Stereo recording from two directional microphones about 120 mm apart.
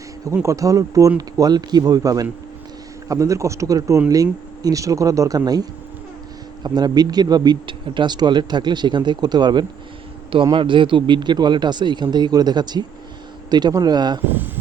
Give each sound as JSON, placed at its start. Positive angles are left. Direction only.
{"t": 0.4, "sound": "speech", "side_deg": -25}
{"t": 14.3, "sound": "speech", "side_deg": -15}